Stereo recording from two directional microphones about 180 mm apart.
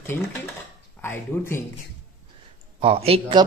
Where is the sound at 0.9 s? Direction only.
15° left (ahead or behind).